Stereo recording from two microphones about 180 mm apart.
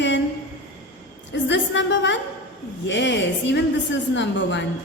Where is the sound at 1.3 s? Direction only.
80° left.